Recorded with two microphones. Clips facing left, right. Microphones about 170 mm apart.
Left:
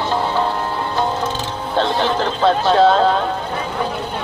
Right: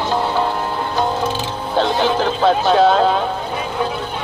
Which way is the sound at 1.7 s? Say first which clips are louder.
Right 1 dB; 5° right (ahead or behind).